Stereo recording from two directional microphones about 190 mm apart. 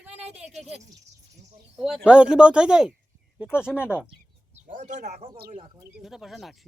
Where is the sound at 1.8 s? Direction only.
5° right (ahead or behind).